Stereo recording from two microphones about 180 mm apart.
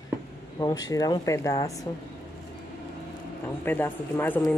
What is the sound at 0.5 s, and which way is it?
Speech, 20° left (ahead or behind).